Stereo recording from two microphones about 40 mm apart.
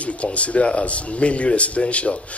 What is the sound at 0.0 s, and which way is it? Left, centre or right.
Speech, left.